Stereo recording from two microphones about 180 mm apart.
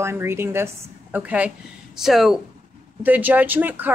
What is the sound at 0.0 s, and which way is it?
Speech, 15° right (ahead or behind).